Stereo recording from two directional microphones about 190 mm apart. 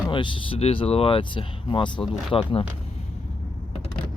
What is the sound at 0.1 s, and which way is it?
Speech, 25° left (ahead or behind).